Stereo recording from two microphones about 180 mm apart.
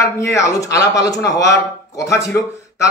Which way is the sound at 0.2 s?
15° left (ahead or behind).